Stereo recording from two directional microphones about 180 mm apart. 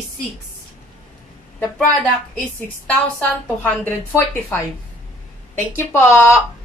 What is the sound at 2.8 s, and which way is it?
Speech, 10° left (ahead or behind).